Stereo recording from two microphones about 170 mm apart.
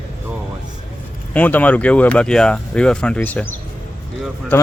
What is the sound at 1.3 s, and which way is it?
Speech, 10° left (ahead or behind).